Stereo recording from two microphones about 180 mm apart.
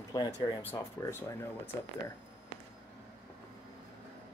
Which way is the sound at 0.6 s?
15° left (ahead or behind).